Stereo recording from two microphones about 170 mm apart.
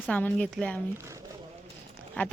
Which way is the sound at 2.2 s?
10° left (ahead or behind).